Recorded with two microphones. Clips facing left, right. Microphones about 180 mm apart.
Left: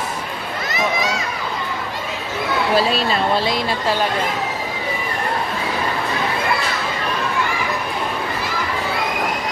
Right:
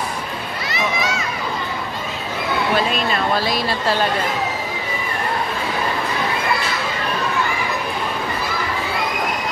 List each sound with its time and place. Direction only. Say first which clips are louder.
2.7 s speech: left 3 dB; 35° left (ahead or behind)